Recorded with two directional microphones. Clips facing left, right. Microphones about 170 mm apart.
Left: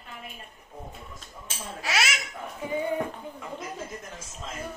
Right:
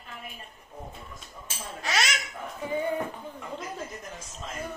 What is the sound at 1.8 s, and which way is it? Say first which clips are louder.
Speech: even; 5° left (ahead or behind).